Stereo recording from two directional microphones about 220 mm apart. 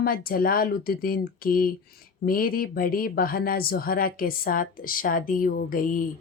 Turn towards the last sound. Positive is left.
turn(degrees=40)  # may be behind; listen again after turning